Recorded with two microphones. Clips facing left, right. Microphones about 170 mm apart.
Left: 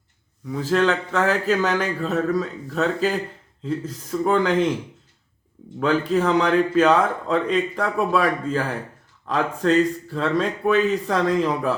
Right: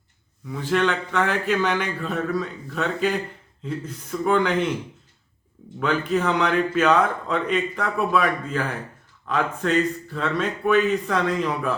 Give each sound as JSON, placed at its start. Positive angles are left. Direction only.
{"t": 0.5, "sound": "a man's voice", "side_deg": 35}
{"t": 5.8, "sound": "a man's voice", "side_deg": 35}